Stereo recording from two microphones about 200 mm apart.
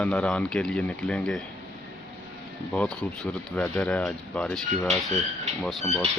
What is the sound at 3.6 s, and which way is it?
Speech, 5° left (ahead or behind).